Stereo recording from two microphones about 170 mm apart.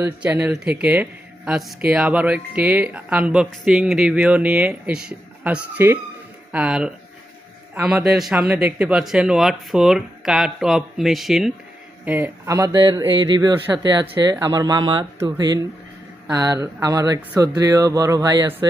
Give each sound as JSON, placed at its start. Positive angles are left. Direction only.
{"t": 0.0, "sound": "a man's voice", "side_deg": -10}